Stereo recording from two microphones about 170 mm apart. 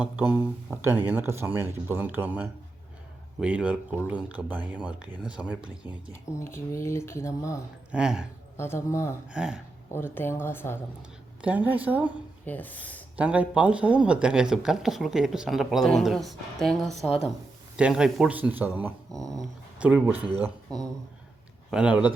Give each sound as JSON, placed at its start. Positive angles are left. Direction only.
{"t": 0.8, "sound": "speech", "side_deg": -10}
{"t": 6.4, "sound": "speech", "side_deg": 15}
{"t": 7.9, "sound": "speech", "side_deg": -5}
{"t": 8.5, "sound": "speech", "side_deg": 15}
{"t": 9.3, "sound": "speech", "side_deg": -5}
{"t": 9.9, "sound": "speech", "side_deg": 15}
{"t": 11.4, "sound": "speech", "side_deg": -10}
{"t": 12.5, "sound": "speech", "side_deg": 10}
{"t": 13.1, "sound": "speech", "side_deg": -10}
{"t": 21.7, "sound": "speech", "side_deg": -5}